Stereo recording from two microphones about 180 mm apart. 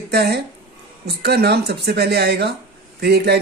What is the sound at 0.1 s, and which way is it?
Speech, 65° right (ahead or behind).